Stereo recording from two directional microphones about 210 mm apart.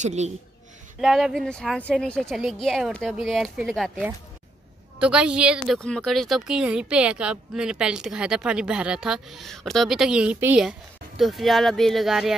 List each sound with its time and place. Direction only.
0.0 s speech: 35° right (ahead or behind)
1.0 s a woman's voice: centre (ahead or behind)